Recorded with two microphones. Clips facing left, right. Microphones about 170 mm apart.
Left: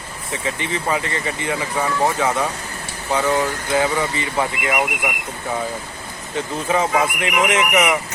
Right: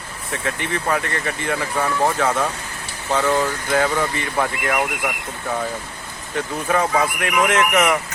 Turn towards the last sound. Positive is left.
turn(degrees=15)  # may be behind; listen again after turning